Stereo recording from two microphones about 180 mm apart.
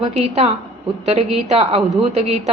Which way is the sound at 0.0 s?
35° right (ahead or behind).